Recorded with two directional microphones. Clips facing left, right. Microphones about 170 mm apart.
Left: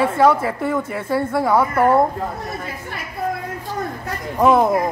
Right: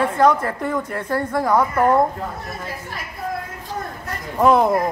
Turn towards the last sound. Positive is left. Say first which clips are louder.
# left 1 dB
turn(degrees=0)  # may be behind; listen again after turning